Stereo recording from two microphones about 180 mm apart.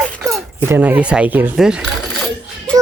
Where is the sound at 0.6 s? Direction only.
10° right (ahead or behind).